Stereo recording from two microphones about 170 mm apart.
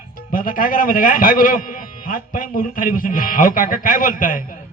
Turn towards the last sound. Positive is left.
turn(degrees=55)  # may be behind; listen again after turning